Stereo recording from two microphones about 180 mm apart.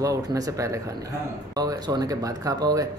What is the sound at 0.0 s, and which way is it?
Speech, 20° right (ahead or behind).